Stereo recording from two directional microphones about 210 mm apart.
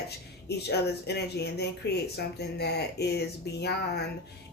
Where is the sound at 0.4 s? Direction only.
50° left (ahead or behind).